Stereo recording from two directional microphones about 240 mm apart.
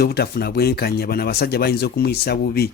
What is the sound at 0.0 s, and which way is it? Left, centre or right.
Speech, left.